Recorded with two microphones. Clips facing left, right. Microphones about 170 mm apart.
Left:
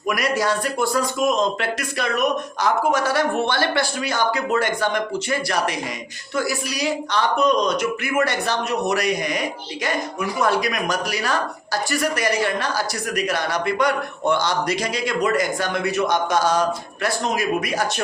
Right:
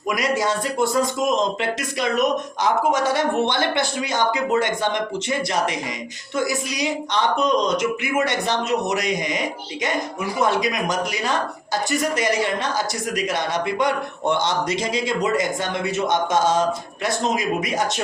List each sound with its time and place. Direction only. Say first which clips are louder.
0.1 s speech: even; 20° right (ahead or behind)